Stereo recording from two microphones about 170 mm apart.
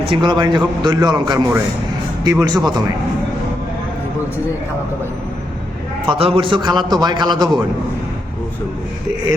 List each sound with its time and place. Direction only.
0.0 s a man's voice: 30° right (ahead or behind)
6.1 s a man's voice: 30° right (ahead or behind)